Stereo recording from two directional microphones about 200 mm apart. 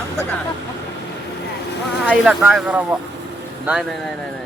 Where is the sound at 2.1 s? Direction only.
Centre (ahead or behind).